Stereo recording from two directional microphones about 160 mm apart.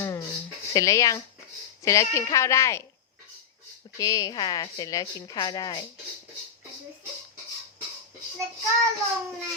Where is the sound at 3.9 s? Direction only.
20° left (ahead or behind).